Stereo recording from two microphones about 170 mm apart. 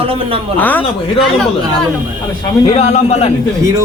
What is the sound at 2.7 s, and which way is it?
Speech, 40° left (ahead or behind).